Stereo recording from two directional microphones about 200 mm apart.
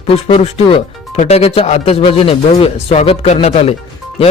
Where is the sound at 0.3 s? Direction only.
30° left (ahead or behind).